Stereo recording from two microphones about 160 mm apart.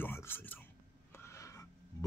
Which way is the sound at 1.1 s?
15° left (ahead or behind).